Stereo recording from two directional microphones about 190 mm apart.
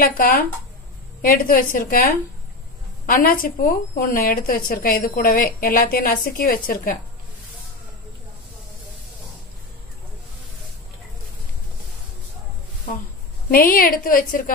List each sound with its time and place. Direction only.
0.0 s a woman's voice: 45° left (ahead or behind)
13.5 s a woman's voice: 50° left (ahead or behind)